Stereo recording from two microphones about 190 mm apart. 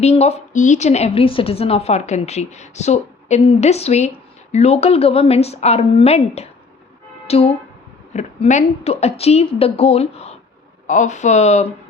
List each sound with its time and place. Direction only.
0.0 s a woman's voice: 35° left (ahead or behind)